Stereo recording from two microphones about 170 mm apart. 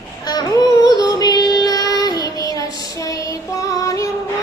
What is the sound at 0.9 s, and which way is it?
Child singing, 25° left (ahead or behind).